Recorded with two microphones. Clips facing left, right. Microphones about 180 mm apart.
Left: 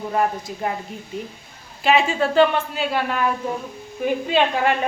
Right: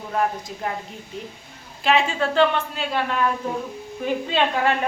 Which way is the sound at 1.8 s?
5° left (ahead or behind).